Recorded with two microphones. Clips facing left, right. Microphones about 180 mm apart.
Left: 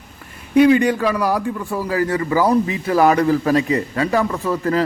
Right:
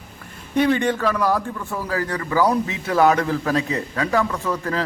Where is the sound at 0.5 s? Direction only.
5° left (ahead or behind).